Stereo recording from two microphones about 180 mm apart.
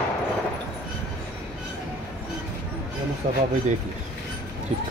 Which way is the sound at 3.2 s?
40° right (ahead or behind).